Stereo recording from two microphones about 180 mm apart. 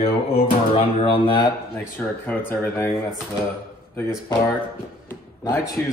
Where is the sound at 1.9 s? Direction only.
10° left (ahead or behind).